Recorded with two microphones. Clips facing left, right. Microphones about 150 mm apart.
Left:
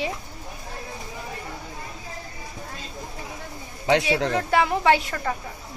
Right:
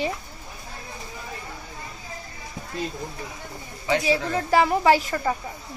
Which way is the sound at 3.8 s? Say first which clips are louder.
Left 3 dB; 75° left (ahead or behind).